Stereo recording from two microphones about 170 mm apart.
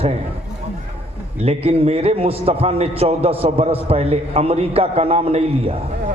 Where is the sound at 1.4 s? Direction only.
35° right (ahead or behind).